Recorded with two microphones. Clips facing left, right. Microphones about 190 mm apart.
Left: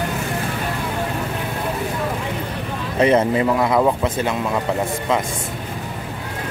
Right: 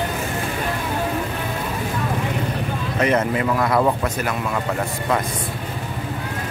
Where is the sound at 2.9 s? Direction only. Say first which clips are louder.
Left 4 dB; 30° left (ahead or behind).